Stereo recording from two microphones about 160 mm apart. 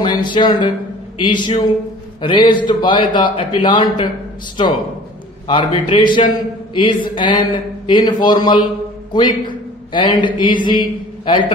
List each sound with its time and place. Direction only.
0.0 s a man's voice: 30° left (ahead or behind)
5.5 s a man's voice: 30° left (ahead or behind)